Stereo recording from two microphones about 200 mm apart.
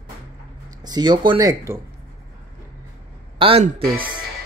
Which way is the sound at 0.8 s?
20° right (ahead or behind).